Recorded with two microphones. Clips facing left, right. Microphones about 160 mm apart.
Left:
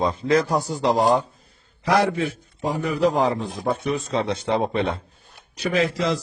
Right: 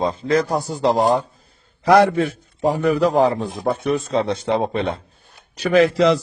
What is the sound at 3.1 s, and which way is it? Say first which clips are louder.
Speech: right 5 dB; 40° right (ahead or behind).